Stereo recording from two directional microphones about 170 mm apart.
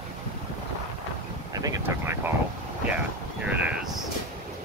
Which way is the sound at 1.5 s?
20° right (ahead or behind).